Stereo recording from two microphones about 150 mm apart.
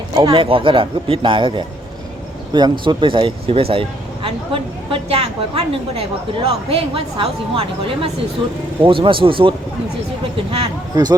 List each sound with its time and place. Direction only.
0.2 s speech: 35° right (ahead or behind)
10.9 s speech: 25° right (ahead or behind)